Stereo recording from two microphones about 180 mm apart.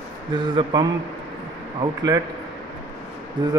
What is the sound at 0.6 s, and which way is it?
Speech, 25° right (ahead or behind).